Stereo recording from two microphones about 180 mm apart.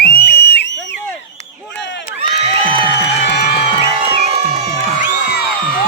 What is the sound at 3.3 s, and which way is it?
Music, 70° left (ahead or behind).